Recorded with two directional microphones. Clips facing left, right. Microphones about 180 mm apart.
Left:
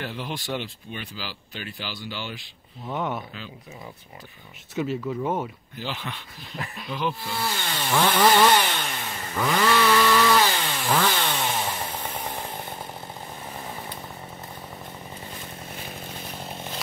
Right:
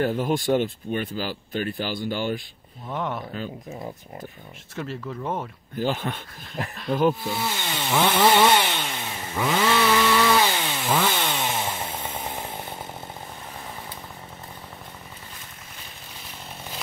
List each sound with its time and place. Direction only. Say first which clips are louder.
0.0 s speech: right 10 dB; 45° right (ahead or behind)
2.9 s speech: even; centre (ahead or behind)
3.3 s speech: right 7 dB; 45° right (ahead or behind)
4.7 s speech: left 5 dB; centre (ahead or behind)
5.8 s speech: right 8 dB; 45° right (ahead or behind)
7.3 s speech: right 1 dB; 20° right (ahead or behind)
8.2 s chainsaw: even; 20° right (ahead or behind)
9.0 s chainsaw: even; 5° right (ahead or behind)
11.9 s chainsaw: even; 10° right (ahead or behind)